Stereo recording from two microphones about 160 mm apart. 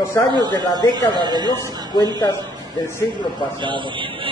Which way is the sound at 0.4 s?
25° right (ahead or behind).